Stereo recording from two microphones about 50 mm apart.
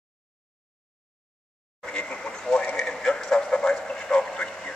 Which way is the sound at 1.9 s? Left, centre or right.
Left.